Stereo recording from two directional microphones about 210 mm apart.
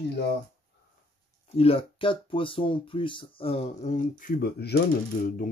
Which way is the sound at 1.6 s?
25° left (ahead or behind).